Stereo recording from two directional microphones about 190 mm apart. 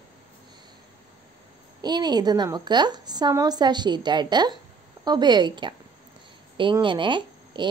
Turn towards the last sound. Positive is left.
turn(degrees=-25)  # may be behind; listen again after turning